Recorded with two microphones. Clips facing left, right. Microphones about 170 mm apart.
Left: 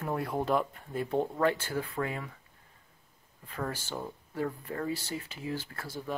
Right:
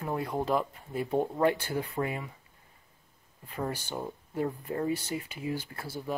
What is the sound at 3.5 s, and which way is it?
Speech, 15° right (ahead or behind).